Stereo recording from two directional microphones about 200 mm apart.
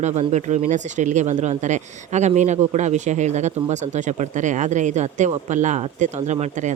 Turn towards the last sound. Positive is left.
turn(degrees=-35)  # may be behind; listen again after turning